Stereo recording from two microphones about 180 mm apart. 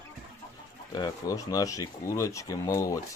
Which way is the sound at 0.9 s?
20° left (ahead or behind).